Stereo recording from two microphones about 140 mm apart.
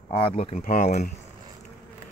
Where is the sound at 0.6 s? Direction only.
65° left (ahead or behind).